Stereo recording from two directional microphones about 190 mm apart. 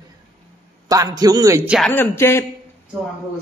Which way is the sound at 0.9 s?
20° right (ahead or behind).